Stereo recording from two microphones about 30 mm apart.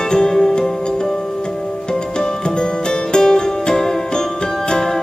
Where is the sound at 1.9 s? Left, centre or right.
Left.